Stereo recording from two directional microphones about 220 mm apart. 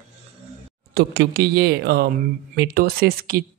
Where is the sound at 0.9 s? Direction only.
45° right (ahead or behind).